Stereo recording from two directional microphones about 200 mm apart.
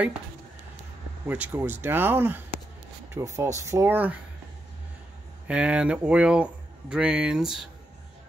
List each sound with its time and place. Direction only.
1.2 s speech: 10° right (ahead or behind)
5.5 s speech: 5° right (ahead or behind)